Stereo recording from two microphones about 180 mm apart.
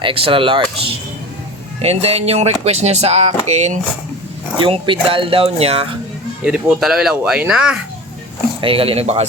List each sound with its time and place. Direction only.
0.0 s speech: 30° right (ahead or behind)
1.8 s speech: 35° right (ahead or behind)
4.5 s speech: 25° right (ahead or behind)
6.4 s speech: 5° right (ahead or behind)
8.6 s speech: 30° right (ahead or behind)